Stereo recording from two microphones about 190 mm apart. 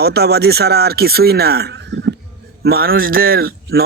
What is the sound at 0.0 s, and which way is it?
Speech, 55° right (ahead or behind).